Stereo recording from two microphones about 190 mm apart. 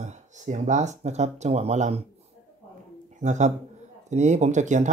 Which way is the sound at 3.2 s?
40° right (ahead or behind).